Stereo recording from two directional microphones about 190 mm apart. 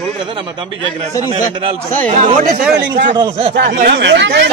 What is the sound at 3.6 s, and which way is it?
Speech, 55° right (ahead or behind).